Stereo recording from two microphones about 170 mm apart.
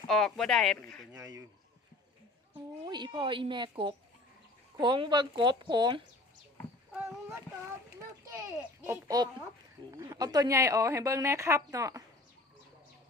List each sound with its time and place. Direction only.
0.1 s speech: centre (ahead or behind)
1.1 s speech: 20° right (ahead or behind)
2.8 s speech: 25° right (ahead or behind)
8.9 s a woman's voice: 20° right (ahead or behind)